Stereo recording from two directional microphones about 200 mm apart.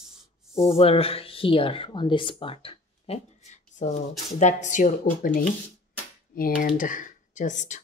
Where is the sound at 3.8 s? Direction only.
35° left (ahead or behind).